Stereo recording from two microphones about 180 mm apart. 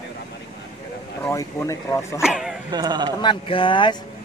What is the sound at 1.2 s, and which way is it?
Speech, 15° left (ahead or behind).